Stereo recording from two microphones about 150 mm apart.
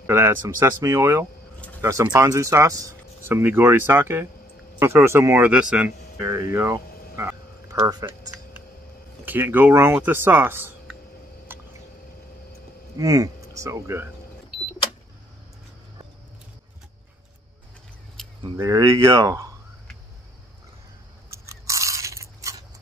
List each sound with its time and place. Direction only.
0.0 s speech: 15° right (ahead or behind)
9.2 s speech: 10° right (ahead or behind)
11.5 s a sound: 15° right (ahead or behind)
12.9 s speech: 25° right (ahead or behind)
18.2 s keys jangling: 5° left (ahead or behind)
18.6 s speech: 20° right (ahead or behind)
21.3 s biting: 20° right (ahead or behind)